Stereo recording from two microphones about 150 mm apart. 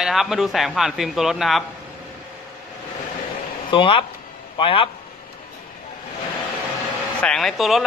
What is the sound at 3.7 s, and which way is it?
Speech, 35° left (ahead or behind).